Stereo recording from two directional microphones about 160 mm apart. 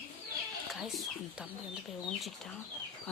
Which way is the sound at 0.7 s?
Centre (ahead or behind).